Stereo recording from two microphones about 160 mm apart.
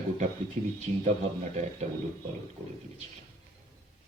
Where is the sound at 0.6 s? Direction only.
50° right (ahead or behind).